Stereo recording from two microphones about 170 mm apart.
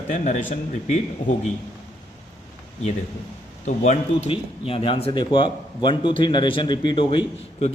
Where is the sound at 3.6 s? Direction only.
45° left (ahead or behind).